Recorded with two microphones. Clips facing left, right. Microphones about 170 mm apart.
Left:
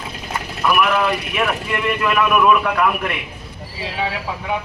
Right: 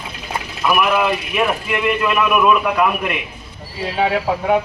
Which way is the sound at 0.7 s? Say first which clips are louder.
Right 1 dB; 5° right (ahead or behind).